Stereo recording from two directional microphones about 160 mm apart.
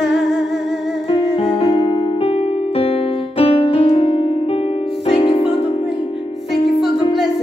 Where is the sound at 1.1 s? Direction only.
35° left (ahead or behind).